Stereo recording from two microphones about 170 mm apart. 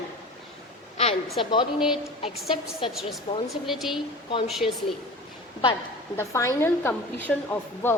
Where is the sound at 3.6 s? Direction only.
Centre (ahead or behind).